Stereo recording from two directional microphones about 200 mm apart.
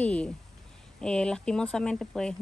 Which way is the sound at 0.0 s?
5° left (ahead or behind).